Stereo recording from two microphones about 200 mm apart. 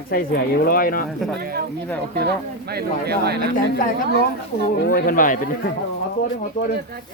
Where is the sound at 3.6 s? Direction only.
45° left (ahead or behind).